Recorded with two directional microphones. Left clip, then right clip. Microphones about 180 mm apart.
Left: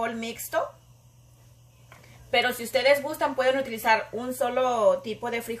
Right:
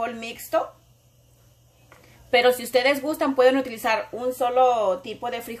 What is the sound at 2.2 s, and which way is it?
A woman's voice, 60° right (ahead or behind).